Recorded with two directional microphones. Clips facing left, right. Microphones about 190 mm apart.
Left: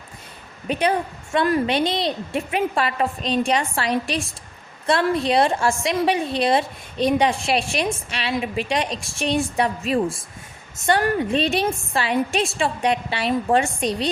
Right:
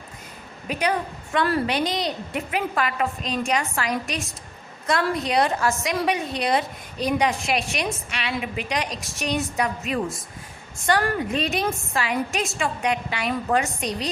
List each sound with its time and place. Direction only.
0.7 s a woman's voice: 30° left (ahead or behind)